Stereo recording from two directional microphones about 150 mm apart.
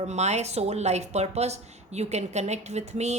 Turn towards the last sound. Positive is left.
turn(degrees=-50)  # may be behind; listen again after turning